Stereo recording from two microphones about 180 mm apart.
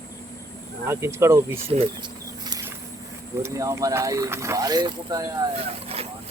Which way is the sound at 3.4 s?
15° right (ahead or behind).